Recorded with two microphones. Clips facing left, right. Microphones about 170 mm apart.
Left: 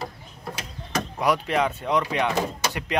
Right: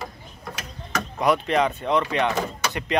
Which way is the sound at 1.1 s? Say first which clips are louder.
Right 2 dB; 10° left (ahead or behind).